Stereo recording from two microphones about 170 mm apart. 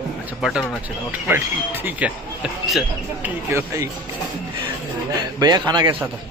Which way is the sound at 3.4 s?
15° right (ahead or behind).